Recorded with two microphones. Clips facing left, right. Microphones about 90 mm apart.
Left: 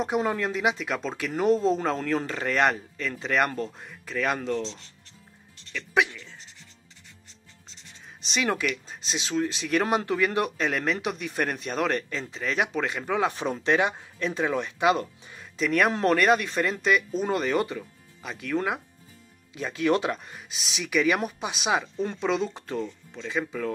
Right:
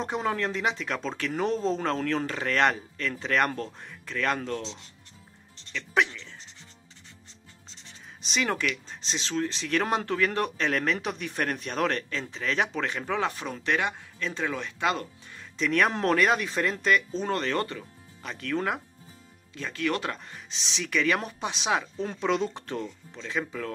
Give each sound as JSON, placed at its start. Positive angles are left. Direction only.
{"t": 0.0, "sound": "speech", "side_deg": 5}
{"t": 5.7, "sound": "music", "side_deg": 10}
{"t": 8.2, "sound": "speech", "side_deg": 0}
{"t": 13.3, "sound": "speech", "side_deg": 25}
{"t": 15.5, "sound": "speech", "side_deg": 5}
{"t": 19.5, "sound": "speech", "side_deg": 15}